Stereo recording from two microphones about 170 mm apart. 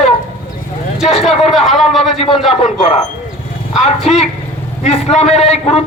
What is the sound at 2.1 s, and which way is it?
Speech, 35° left (ahead or behind).